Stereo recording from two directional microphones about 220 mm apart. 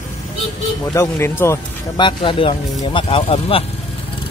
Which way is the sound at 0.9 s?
10° left (ahead or behind).